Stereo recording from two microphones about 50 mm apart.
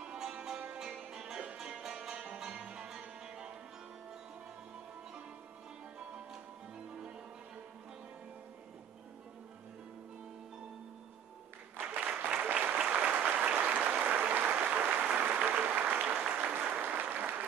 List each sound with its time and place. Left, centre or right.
0.0 s music: centre
11.8 s applause: right